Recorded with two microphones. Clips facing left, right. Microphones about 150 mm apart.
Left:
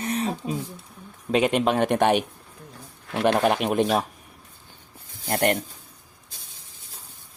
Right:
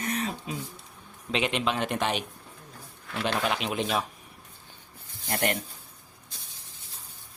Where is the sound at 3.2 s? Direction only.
50° left (ahead or behind).